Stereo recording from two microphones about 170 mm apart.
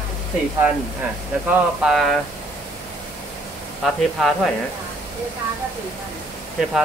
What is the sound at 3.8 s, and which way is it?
Speech, centre (ahead or behind).